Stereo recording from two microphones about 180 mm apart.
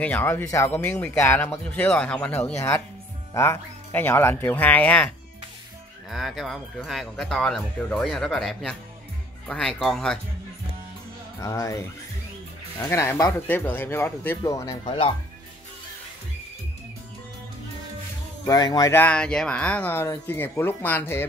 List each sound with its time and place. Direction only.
0.0 s speech: 10° left (ahead or behind)
11.4 s speech: 20° left (ahead or behind)
18.4 s speech: 20° left (ahead or behind)